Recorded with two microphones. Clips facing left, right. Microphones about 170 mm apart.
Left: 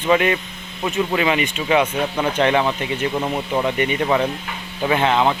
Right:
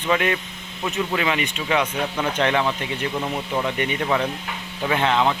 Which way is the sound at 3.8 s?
15° left (ahead or behind).